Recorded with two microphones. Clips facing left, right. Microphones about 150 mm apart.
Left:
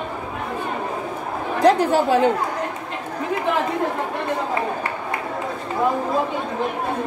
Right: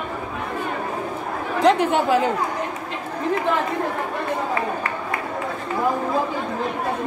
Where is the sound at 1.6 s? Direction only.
35° left (ahead or behind).